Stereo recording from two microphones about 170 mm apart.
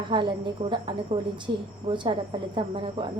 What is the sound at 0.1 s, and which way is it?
Speech, 30° right (ahead or behind).